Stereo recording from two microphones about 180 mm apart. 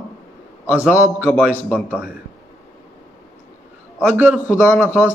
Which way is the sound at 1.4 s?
10° right (ahead or behind).